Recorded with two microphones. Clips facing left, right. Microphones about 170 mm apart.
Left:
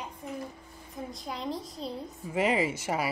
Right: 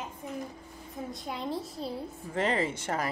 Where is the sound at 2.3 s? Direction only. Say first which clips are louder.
Left 2 dB; 10° left (ahead or behind).